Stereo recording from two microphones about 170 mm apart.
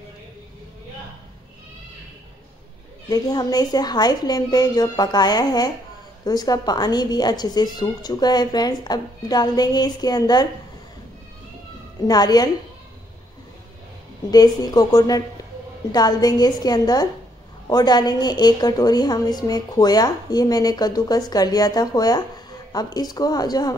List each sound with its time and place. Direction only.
3.1 s a woman's voice: 20° left (ahead or behind)
12.1 s a woman's voice: 25° left (ahead or behind)
14.3 s a woman's voice: 25° left (ahead or behind)